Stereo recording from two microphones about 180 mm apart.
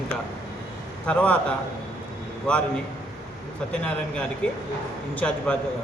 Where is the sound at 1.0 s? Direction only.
10° left (ahead or behind).